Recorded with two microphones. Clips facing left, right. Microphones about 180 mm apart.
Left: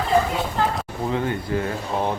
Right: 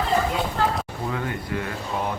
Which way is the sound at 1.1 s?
30° left (ahead or behind).